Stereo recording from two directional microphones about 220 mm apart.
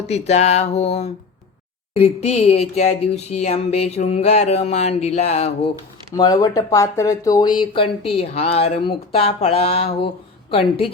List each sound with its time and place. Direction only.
0.1 s speech: 30° left (ahead or behind)
6.1 s speech: 15° left (ahead or behind)